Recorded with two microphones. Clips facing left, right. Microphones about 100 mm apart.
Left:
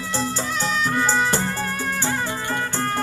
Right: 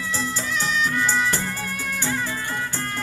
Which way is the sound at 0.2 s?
40° left (ahead or behind).